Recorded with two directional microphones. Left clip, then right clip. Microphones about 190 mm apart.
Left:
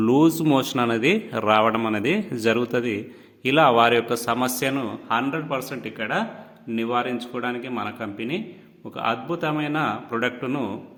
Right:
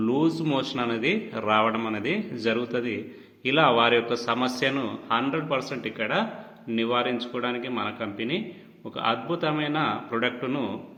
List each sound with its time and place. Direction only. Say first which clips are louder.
0.0 s a man's voice: left 6 dB; 65° left (ahead or behind); by 10.7 s 35° left (ahead or behind)